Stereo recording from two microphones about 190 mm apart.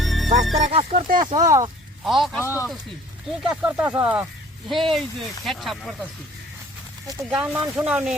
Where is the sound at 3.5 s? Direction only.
10° right (ahead or behind).